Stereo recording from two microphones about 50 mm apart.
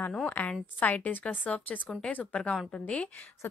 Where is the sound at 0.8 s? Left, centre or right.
Left.